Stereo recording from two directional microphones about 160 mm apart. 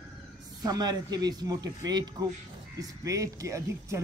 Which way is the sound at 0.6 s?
25° right (ahead or behind).